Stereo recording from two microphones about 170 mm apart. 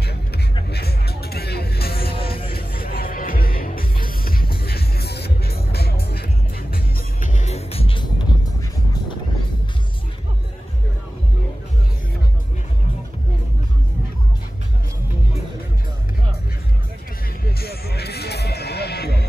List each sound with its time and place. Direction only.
0.7 s vehicle: 70° left (ahead or behind)
2.5 s music: 60° left (ahead or behind)
6.7 s music: 50° left (ahead or behind); by 8.5 s 30° left (ahead or behind)
17.5 s music: 65° left (ahead or behind)